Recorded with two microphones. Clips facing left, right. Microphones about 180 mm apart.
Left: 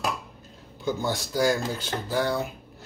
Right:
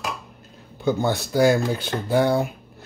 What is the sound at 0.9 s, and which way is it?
Speech, 60° right (ahead or behind).